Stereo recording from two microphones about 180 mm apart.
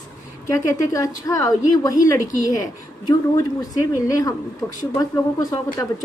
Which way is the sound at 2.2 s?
45° left (ahead or behind).